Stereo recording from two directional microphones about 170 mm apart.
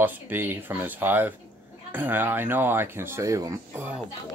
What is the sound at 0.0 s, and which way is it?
Speech, 10° right (ahead or behind).